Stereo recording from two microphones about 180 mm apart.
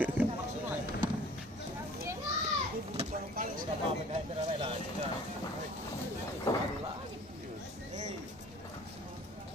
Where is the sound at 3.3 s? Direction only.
50° right (ahead or behind).